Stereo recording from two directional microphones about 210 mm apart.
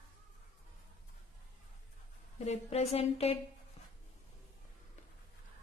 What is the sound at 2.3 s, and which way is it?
A woman's voice, 30° left (ahead or behind).